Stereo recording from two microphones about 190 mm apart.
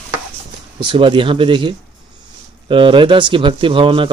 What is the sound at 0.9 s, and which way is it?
Speech, 25° right (ahead or behind).